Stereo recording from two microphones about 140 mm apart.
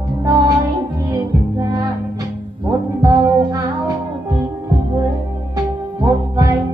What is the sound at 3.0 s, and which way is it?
Music, 25° right (ahead or behind).